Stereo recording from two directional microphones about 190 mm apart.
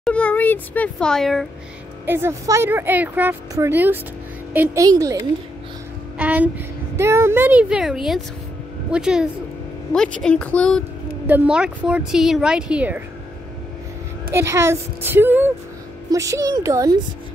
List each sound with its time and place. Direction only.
0.0 s a child's voice: 5° left (ahead or behind)
2.0 s a woman's voice: 10° right (ahead or behind)
6.1 s a woman's voice: 10° right (ahead or behind)
11.2 s a child's voice: 5° right (ahead or behind)
14.3 s a woman's voice: 15° right (ahead or behind)